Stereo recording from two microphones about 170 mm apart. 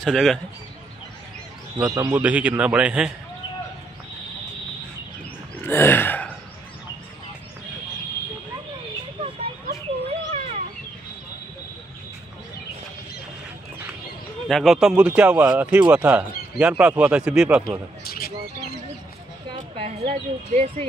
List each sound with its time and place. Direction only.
0.0 s speech: centre (ahead or behind)
2.0 s speech: 10° right (ahead or behind)
5.6 s gasp: 15° left (ahead or behind)
9.2 s a sound: 35° right (ahead or behind)
14.5 s speech: centre (ahead or behind)
18.0 s a sound: 60° left (ahead or behind)
20.1 s speech: 40° right (ahead or behind)